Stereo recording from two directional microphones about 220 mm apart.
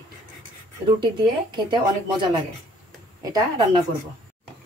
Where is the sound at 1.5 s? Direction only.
20° right (ahead or behind).